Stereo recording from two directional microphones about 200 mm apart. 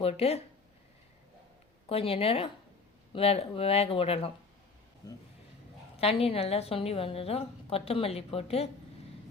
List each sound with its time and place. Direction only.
0.0 s speech: 30° left (ahead or behind)
1.9 s a woman's voice: 30° left (ahead or behind)
6.0 s a woman's voice: 30° left (ahead or behind)